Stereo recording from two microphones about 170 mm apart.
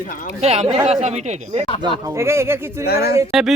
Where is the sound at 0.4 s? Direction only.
40° right (ahead or behind).